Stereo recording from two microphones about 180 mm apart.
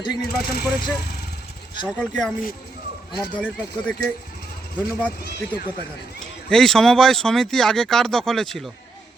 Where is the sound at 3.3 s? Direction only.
5° left (ahead or behind).